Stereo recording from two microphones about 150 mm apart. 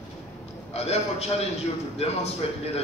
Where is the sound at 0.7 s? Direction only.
45° left (ahead or behind).